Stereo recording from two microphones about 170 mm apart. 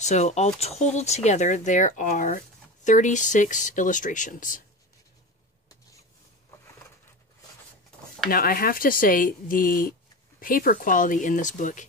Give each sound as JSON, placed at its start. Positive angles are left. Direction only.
{"t": 0.0, "sound": "speech", "side_deg": 45}
{"t": 8.3, "sound": "speech", "side_deg": 55}